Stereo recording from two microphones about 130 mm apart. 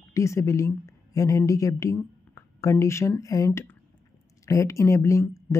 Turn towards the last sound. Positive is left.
turn(degrees=25)  # may be behind; listen again after turning